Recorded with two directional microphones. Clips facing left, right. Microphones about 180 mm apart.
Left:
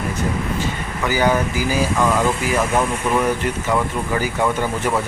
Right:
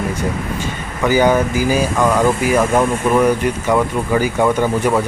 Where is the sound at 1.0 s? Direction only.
20° right (ahead or behind).